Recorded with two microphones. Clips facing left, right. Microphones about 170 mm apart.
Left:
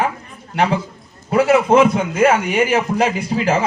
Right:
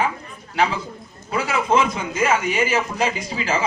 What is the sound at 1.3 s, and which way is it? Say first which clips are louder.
Speech: left 8 dB; 55° left (ahead or behind).